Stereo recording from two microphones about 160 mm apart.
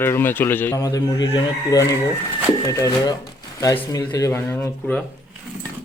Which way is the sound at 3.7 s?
30° left (ahead or behind).